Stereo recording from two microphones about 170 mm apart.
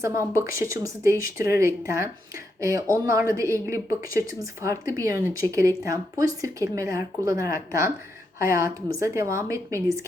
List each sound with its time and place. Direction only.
0.0 s speech: 15° right (ahead or behind)